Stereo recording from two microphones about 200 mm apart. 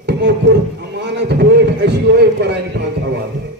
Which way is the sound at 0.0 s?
60° right (ahead or behind).